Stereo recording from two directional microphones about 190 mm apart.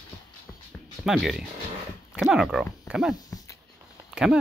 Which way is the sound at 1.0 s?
Centre (ahead or behind).